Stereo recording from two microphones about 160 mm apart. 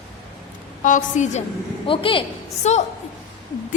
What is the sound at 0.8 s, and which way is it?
Speech, 50° left (ahead or behind).